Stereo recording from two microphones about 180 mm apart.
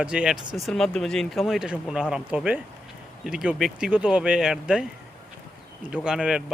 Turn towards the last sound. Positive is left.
turn(degrees=-5)  # may be behind; listen again after turning